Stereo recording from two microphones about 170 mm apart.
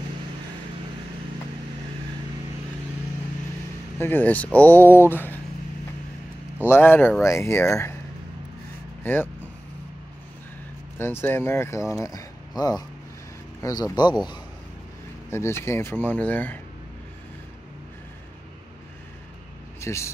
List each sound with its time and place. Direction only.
4.0 s speech: 10° left (ahead or behind)
6.6 s speech: 15° left (ahead or behind)
9.0 s speech: 10° left (ahead or behind)
11.0 s speech: 15° left (ahead or behind)
15.2 s speech: 15° left (ahead or behind)
19.8 s speech: 15° left (ahead or behind)